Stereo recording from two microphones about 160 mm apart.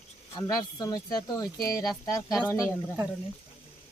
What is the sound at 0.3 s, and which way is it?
Speech, 25° left (ahead or behind).